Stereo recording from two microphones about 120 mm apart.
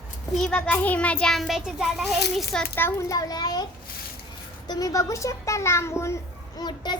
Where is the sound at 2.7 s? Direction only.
20° left (ahead or behind).